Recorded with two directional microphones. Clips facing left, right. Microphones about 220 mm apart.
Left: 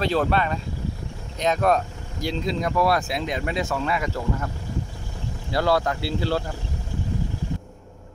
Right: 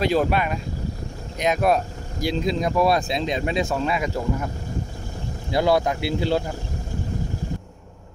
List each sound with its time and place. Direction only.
0.0 s speech: 10° right (ahead or behind)
5.5 s speech: 15° right (ahead or behind)